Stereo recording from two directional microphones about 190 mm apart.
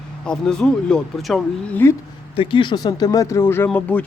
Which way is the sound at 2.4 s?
25° left (ahead or behind).